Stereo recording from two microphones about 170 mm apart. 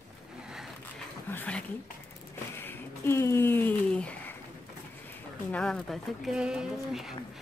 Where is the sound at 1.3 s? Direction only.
10° left (ahead or behind).